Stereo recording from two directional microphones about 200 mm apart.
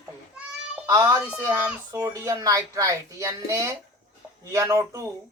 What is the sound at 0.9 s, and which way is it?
A child's voice, 15° right (ahead or behind).